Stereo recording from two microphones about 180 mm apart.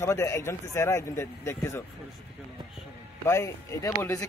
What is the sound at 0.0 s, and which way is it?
Speech, 15° left (ahead or behind).